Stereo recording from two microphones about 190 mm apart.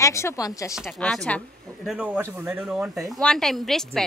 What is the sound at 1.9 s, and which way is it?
Speech, 5° right (ahead or behind).